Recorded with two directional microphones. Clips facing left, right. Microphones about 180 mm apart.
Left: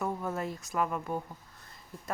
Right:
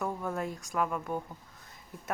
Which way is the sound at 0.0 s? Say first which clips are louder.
Even; centre (ahead or behind).